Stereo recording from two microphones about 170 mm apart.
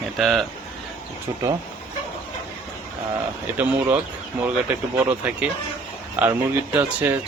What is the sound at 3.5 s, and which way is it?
Speech, 10° right (ahead or behind).